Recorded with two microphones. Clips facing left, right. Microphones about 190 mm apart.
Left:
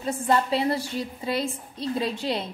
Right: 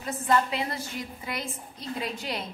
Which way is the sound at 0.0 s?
30° left (ahead or behind).